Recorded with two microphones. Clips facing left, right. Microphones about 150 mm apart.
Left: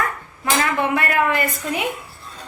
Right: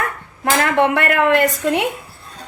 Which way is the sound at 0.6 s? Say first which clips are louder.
Right 6 dB; 70° right (ahead or behind).